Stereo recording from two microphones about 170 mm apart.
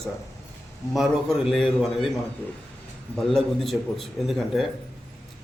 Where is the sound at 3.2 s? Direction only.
Centre (ahead or behind).